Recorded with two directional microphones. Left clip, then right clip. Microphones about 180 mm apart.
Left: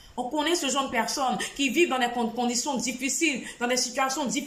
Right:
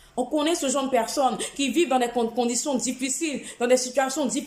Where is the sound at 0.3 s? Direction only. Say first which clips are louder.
Right 1 dB; 20° right (ahead or behind).